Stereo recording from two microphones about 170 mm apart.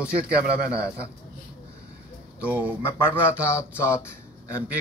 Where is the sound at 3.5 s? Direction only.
15° left (ahead or behind).